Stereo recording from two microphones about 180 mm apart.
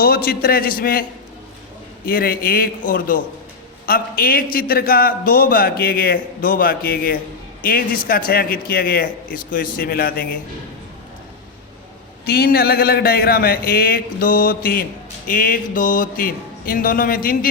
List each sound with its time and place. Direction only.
0.0 s a man's voice: 60° left (ahead or behind)
2.0 s a man's voice: 55° left (ahead or behind)
12.2 s a man's voice: 60° left (ahead or behind)